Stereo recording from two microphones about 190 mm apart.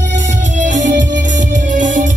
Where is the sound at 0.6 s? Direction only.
40° right (ahead or behind).